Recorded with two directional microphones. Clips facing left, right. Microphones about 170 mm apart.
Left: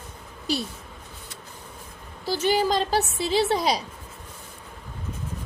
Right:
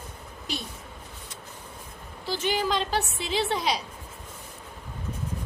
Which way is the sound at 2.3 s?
40° left (ahead or behind).